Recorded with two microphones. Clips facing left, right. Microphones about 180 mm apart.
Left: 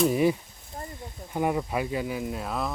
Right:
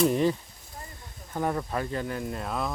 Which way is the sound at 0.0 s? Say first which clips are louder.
Left 1 dB; 5° left (ahead or behind).